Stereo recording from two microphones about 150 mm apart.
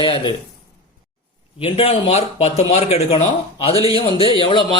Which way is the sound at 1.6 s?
40° left (ahead or behind).